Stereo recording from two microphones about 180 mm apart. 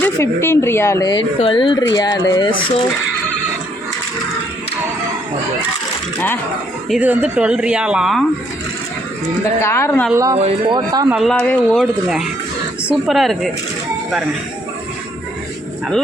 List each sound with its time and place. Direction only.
0.0 s speech: 15° left (ahead or behind)
6.8 s speech: 5° right (ahead or behind)
9.6 s speech: 15° left (ahead or behind)
10.1 s speech: 20° right (ahead or behind)
10.3 s speech: 35° right (ahead or behind)
11.1 s speech: centre (ahead or behind)
11.3 s speech: 10° left (ahead or behind)